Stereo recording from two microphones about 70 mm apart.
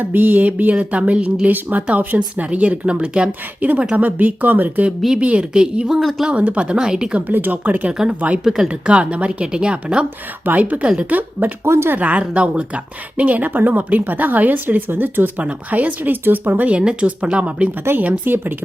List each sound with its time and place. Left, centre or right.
0.0 s a woman's voice: right; by 6.0 s centre
6.0 s speech: centre
6.2 s a woman's voice: centre
7.3 s speech: right
8.4 s a woman's voice: centre
10.4 s speech: right
11.2 s speech: right
11.6 s speech: right
11.9 s speech: right
18.0 s speech: right